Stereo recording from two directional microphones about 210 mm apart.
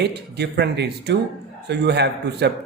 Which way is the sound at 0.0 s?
50° right (ahead or behind).